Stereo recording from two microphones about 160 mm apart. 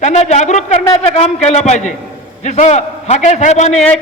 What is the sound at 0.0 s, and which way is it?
A man's voice, 45° left (ahead or behind).